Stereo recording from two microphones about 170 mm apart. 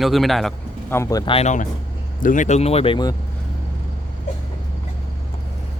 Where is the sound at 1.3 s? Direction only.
45° left (ahead or behind).